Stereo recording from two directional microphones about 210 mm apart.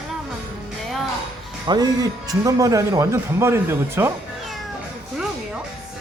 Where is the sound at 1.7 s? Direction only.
20° right (ahead or behind).